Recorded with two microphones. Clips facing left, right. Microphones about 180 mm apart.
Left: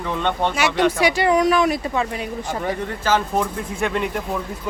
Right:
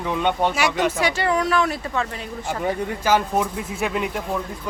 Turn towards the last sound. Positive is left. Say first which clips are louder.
# left 2 dB
turn(degrees=-5)  # may be behind; listen again after turning